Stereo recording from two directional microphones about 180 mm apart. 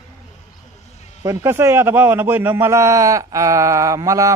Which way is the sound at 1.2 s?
15° right (ahead or behind).